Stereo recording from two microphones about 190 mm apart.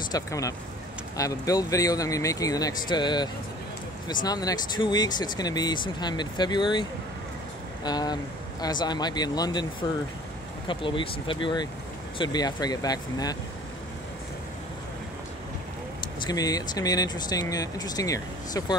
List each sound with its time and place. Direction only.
0.1 s speech: 15° left (ahead or behind)
16.0 s speech: 20° left (ahead or behind)